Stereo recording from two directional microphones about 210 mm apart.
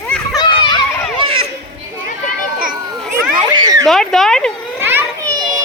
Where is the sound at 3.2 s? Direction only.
20° right (ahead or behind).